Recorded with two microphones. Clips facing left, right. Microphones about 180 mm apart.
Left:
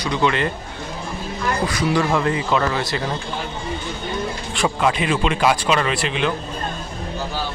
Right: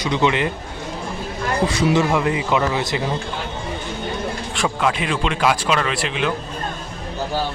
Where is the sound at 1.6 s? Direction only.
25° right (ahead or behind).